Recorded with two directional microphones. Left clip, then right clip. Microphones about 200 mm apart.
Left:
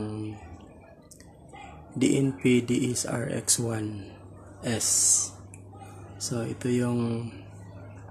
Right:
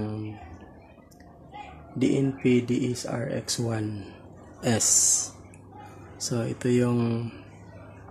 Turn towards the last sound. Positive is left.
turn(degrees=-10)  # may be behind; listen again after turning